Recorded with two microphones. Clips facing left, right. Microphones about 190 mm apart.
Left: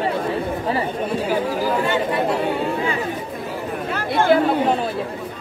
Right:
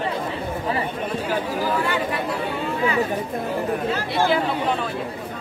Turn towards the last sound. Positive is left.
turn(degrees=50)  # may be behind; listen again after turning